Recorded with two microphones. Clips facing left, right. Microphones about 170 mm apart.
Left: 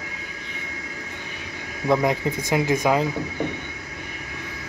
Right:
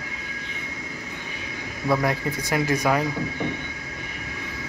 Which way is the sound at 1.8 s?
20° left (ahead or behind).